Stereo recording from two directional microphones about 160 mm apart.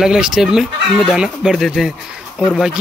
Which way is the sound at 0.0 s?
5° right (ahead or behind).